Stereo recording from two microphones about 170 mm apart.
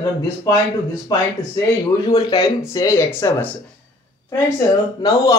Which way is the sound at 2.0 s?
25° left (ahead or behind).